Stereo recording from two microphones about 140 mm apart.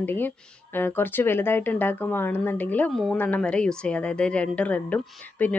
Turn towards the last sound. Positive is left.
turn(degrees=10)  # may be behind; listen again after turning